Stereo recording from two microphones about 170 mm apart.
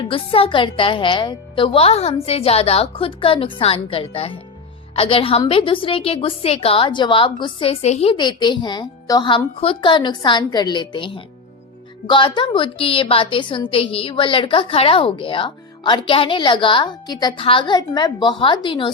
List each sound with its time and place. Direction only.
0.0 s a woman's voice: 35° left (ahead or behind)
8.1 s a woman's voice: 25° left (ahead or behind)